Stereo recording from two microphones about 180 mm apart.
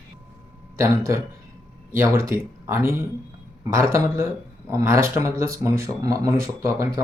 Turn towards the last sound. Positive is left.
turn(degrees=-15)  # may be behind; listen again after turning